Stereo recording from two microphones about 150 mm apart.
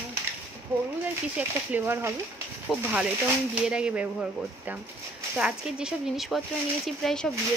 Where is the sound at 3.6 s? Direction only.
5° right (ahead or behind).